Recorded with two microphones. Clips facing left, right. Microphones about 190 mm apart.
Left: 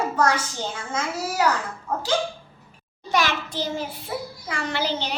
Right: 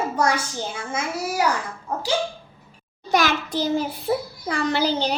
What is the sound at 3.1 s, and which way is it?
A child's voice, 40° right (ahead or behind).